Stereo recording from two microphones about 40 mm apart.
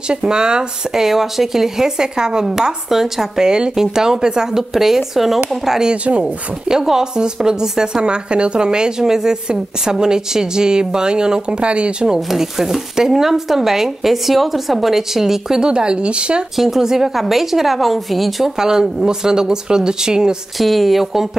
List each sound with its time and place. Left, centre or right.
0.2 s speech: centre
1.0 s speech: centre
6.7 s speech: centre; by 12.1 s right
12.2 s speech: centre; by 16.4 s right
16.5 s a woman's voice: centre
18.6 s speech: centre
20.5 s a woman's voice: centre